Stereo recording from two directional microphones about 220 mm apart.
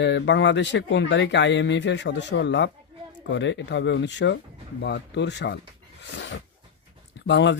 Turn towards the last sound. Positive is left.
turn(degrees=55)  # may be behind; listen again after turning